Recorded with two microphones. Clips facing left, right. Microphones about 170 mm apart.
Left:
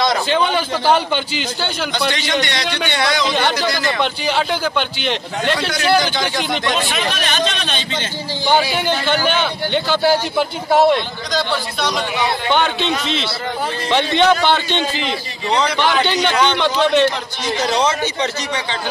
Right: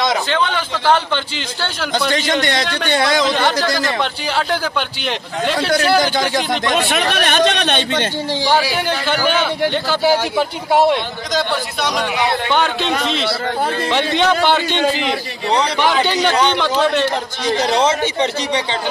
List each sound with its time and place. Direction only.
0.3 s a man's voice: 10° left (ahead or behind)
2.9 s a man's voice: 40° right (ahead or behind)
3.3 s speech: centre (ahead or behind)
6.8 s speech: 65° right (ahead or behind)
8.5 s speech: 5° right (ahead or behind)
13.8 s a man's voice: 5° right (ahead or behind)
15.8 s a man's voice: 5° right (ahead or behind)
17.6 s speech: 25° right (ahead or behind)